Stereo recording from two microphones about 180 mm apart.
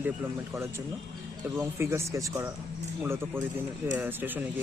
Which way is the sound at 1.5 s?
15° right (ahead or behind).